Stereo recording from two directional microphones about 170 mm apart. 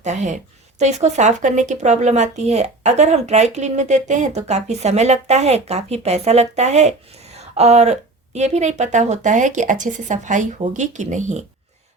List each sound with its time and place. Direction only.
0.0 s a woman's voice: 45° right (ahead or behind)